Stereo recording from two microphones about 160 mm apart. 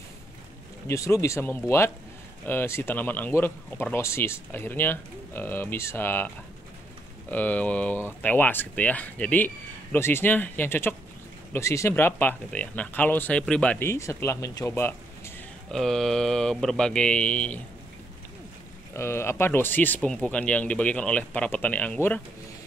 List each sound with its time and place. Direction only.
0.8 s speech: 20° left (ahead or behind)
15.7 s speech: 5° left (ahead or behind)
18.9 s speech: 15° left (ahead or behind)